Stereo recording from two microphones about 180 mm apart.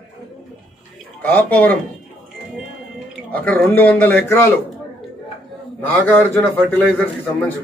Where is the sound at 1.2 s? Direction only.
10° left (ahead or behind).